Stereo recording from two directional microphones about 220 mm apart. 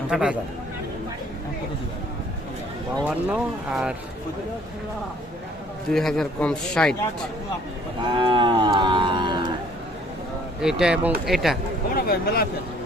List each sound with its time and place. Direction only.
0.1 s a man's voice: 5° right (ahead or behind)
3.1 s a man's voice: 5° right (ahead or behind)
5.9 s a man's voice: centre (ahead or behind)
8.1 s cattle: 20° right (ahead or behind)
10.6 s a man's voice: centre (ahead or behind)
12.0 s speech: 45° left (ahead or behind)